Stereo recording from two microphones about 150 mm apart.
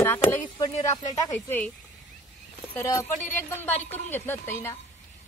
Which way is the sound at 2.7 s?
15° left (ahead or behind).